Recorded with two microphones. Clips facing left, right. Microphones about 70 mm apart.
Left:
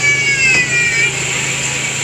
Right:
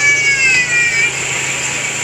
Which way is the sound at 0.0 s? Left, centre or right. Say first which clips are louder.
Right 1 dB; centre.